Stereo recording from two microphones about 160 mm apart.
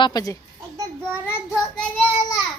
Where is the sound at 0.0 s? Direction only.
25° left (ahead or behind).